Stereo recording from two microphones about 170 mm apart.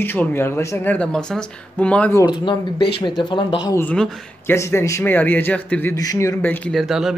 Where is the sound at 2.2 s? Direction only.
25° left (ahead or behind).